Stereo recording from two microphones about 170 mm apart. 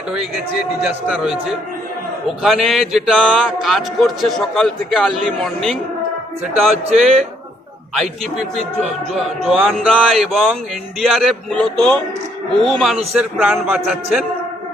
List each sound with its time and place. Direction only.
1.0 s speech: 5° right (ahead or behind)
9.1 s speech: centre (ahead or behind)